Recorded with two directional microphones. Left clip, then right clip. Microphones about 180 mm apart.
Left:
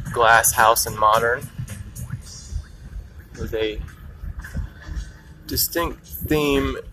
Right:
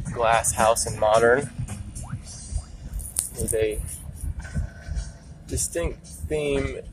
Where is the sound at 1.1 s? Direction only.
20° right (ahead or behind).